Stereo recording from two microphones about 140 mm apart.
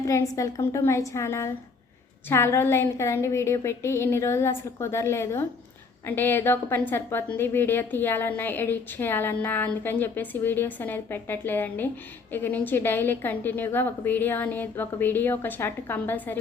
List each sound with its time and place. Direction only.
0.0 s a woman's voice: 25° left (ahead or behind)